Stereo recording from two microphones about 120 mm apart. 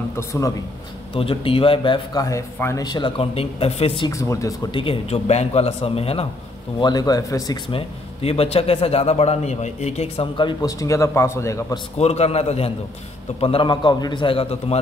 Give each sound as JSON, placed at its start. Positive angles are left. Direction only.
{"t": 0.1, "sound": "a man's voice", "side_deg": 25}
{"t": 1.1, "sound": "a man's voice", "side_deg": 50}
{"t": 2.2, "sound": "a man's voice", "side_deg": 25}
{"t": 3.2, "sound": "a man's voice", "side_deg": 55}
{"t": 4.1, "sound": "a man's voice", "side_deg": 25}
{"t": 4.6, "sound": "a man's voice", "side_deg": 45}
{"t": 6.8, "sound": "speech", "side_deg": 35}
{"t": 7.7, "sound": "a man's voice", "side_deg": 55}
{"t": 10.3, "sound": "speech", "side_deg": 40}
{"t": 10.7, "sound": "a man's voice", "side_deg": 25}
{"t": 12.0, "sound": "a man's voice", "side_deg": 60}